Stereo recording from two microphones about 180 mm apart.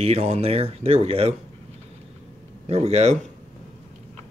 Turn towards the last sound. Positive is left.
turn(degrees=-40)  # may be behind; listen again after turning